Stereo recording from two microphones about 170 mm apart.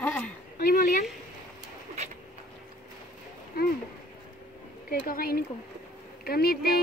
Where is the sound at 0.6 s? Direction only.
60° left (ahead or behind).